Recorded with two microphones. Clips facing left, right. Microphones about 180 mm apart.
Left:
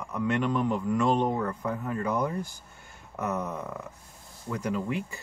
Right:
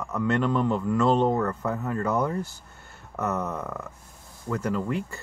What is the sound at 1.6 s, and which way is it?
Speech, 75° right (ahead or behind).